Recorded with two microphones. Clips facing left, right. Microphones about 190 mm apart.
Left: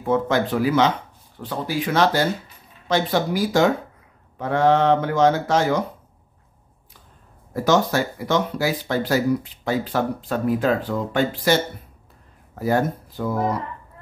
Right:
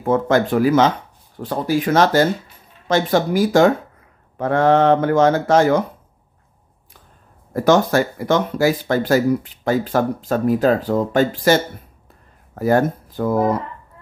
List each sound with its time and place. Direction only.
0.0 s speech: 50° right (ahead or behind)
7.5 s speech: 55° right (ahead or behind)